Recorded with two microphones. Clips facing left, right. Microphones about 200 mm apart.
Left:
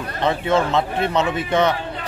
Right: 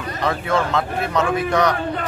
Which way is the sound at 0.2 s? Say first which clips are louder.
Left 2 dB; 25° left (ahead or behind).